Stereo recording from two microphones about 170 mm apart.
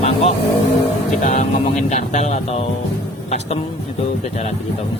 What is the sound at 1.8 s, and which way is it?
Speech, 45° left (ahead or behind).